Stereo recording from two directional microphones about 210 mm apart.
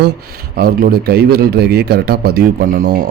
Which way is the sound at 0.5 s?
45° right (ahead or behind).